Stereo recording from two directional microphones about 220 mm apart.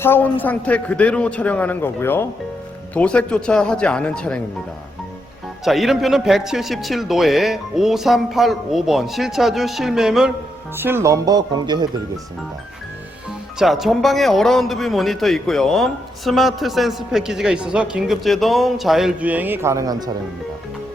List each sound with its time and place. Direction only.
0.0 s a man's voice: 10° left (ahead or behind)
5.6 s speech: centre (ahead or behind); by 11.9 s 20° right (ahead or behind)
13.6 s speech: centre (ahead or behind)